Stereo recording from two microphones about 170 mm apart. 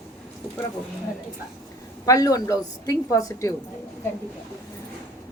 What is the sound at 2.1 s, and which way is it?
A woman's voice, 20° left (ahead or behind).